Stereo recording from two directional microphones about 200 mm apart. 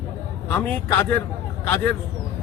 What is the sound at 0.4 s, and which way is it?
Speech, 5° left (ahead or behind).